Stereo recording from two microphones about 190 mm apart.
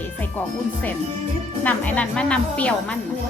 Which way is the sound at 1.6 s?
5° left (ahead or behind).